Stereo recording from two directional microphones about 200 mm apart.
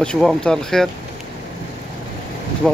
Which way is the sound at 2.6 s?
5° left (ahead or behind).